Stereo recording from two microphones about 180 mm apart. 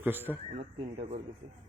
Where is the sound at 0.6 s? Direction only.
35° right (ahead or behind).